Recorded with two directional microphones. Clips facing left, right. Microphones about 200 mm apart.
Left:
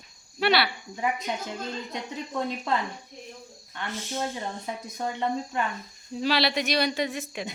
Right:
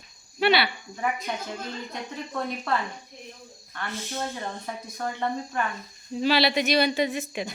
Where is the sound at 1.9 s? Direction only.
20° left (ahead or behind).